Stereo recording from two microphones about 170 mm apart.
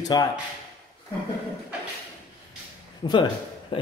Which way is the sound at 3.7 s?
30° left (ahead or behind).